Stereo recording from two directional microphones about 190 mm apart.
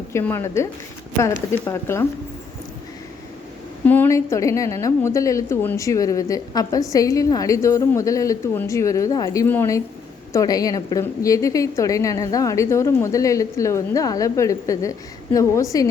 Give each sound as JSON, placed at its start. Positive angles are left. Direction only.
{"t": 0.1, "sound": "a woman's voice", "side_deg": 15}
{"t": 3.8, "sound": "a woman's voice", "side_deg": 10}